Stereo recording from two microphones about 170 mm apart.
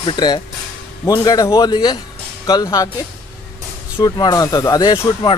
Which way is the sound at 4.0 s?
25° left (ahead or behind).